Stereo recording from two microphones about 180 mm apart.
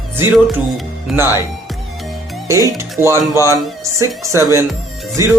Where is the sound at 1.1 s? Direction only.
Centre (ahead or behind).